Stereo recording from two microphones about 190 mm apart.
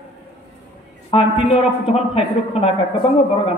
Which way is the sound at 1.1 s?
30° left (ahead or behind).